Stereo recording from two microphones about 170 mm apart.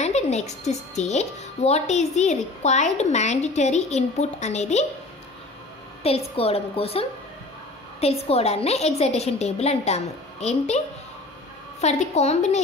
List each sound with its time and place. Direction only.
0.0 s a woman's voice: 40° left (ahead or behind)
6.0 s a woman's voice: 35° left (ahead or behind)
11.8 s a woman's voice: 40° left (ahead or behind)